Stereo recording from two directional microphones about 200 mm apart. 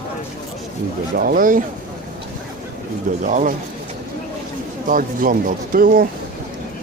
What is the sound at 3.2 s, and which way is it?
Speech, 40° right (ahead or behind).